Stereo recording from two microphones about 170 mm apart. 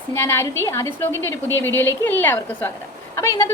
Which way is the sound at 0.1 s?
15° left (ahead or behind).